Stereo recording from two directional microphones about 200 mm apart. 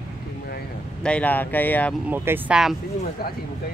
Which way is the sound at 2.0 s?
10° right (ahead or behind).